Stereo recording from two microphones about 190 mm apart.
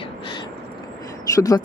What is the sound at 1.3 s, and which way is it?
Speech, 20° left (ahead or behind).